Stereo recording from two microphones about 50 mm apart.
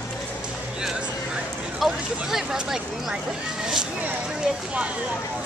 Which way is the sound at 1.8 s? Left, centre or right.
Centre.